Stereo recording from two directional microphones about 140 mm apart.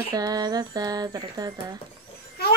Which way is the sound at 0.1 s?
25° right (ahead or behind).